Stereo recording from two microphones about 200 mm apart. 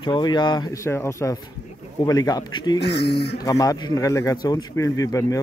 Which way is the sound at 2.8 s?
55° left (ahead or behind).